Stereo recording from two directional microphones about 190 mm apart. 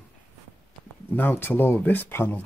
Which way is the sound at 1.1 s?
10° left (ahead or behind).